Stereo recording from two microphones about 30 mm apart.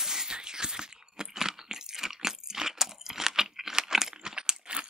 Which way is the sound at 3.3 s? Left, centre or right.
Centre.